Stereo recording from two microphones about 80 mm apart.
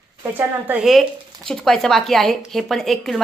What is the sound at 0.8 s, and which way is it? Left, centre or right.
Speech, centre.